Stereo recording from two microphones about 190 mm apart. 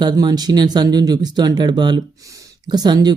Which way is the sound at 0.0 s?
20° right (ahead or behind).